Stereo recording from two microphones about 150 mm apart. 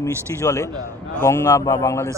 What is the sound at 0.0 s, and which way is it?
A man's voice, 20° left (ahead or behind).